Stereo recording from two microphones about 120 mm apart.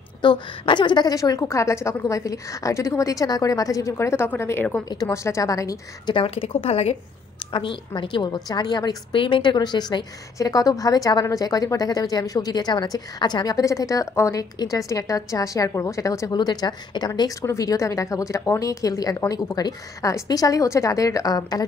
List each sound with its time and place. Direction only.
0.2 s a woman's voice: 40° left (ahead or behind); by 4.6 s 20° left (ahead or behind)
4.8 s a woman's voice: 35° left (ahead or behind)
6.1 s speech: 50° left (ahead or behind)
7.5 s a woman's voice: 40° left (ahead or behind)